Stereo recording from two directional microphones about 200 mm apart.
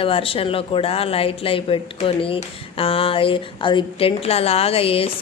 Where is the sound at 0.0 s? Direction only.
25° left (ahead or behind).